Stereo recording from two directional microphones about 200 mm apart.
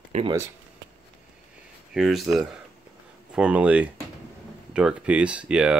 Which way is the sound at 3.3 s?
5° right (ahead or behind).